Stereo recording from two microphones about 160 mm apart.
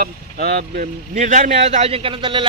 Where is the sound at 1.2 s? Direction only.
50° right (ahead or behind); by 2.4 s 30° right (ahead or behind).